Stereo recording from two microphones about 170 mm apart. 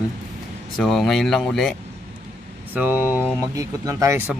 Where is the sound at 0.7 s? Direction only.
Centre (ahead or behind).